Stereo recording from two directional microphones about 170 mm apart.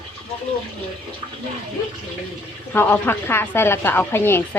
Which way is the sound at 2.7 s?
15° left (ahead or behind).